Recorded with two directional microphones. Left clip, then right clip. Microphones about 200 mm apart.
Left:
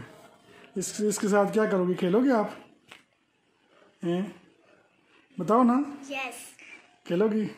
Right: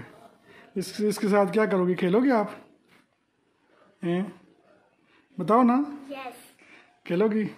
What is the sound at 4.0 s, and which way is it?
Speech, 5° right (ahead or behind).